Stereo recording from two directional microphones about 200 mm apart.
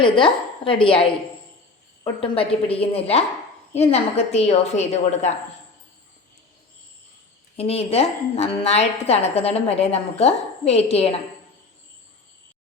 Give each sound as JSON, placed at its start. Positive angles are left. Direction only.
{"t": 0.0, "sound": "a woman's voice", "side_deg": 25}
{"t": 2.2, "sound": "a woman's voice", "side_deg": 30}
{"t": 7.5, "sound": "a woman's voice", "side_deg": 30}